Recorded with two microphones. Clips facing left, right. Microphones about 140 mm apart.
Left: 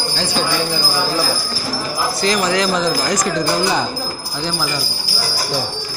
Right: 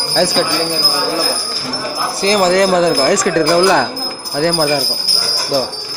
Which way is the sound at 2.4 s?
55° right (ahead or behind).